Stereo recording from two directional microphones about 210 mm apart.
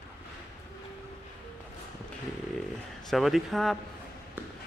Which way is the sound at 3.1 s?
Centre (ahead or behind).